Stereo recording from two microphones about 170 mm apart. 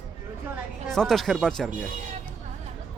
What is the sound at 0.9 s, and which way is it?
Speech, centre (ahead or behind).